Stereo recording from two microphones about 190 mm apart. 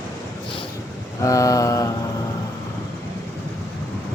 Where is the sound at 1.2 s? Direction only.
15° left (ahead or behind).